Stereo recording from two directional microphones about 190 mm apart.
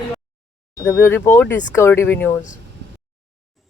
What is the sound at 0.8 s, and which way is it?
Speech, 15° left (ahead or behind).